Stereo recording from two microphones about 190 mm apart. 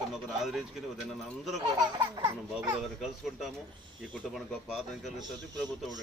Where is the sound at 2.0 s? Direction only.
20° right (ahead or behind).